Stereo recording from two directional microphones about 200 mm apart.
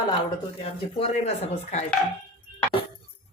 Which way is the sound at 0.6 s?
30° left (ahead or behind).